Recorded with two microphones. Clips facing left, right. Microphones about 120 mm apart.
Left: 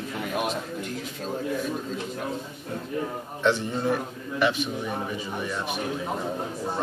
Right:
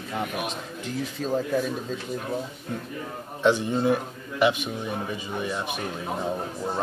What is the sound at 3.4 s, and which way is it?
Speech, 15° right (ahead or behind).